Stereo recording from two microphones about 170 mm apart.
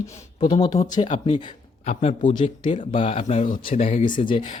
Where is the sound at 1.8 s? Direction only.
40° left (ahead or behind).